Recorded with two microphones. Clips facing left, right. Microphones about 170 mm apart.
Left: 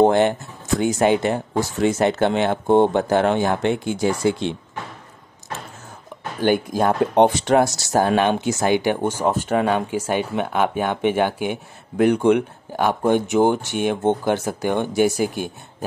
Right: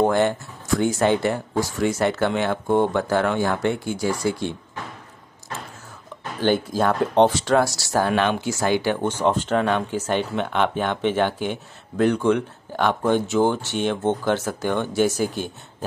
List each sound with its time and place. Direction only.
0.0 s speech: 20° left (ahead or behind)
6.4 s speech: 15° left (ahead or behind)